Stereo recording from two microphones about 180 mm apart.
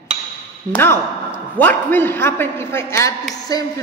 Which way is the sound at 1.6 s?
10° left (ahead or behind).